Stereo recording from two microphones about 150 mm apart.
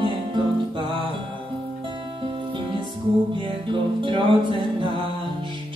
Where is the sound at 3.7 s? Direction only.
35° right (ahead or behind).